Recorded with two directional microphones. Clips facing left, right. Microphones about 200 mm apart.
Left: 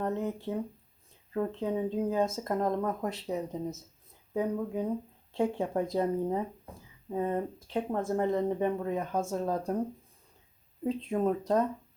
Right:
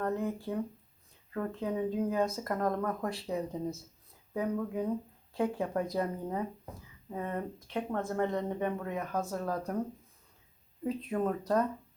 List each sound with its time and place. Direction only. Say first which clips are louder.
0.0 s speech: left 1 dB; 20° left (ahead or behind)
11.2 s speech: left 2 dB; 20° left (ahead or behind)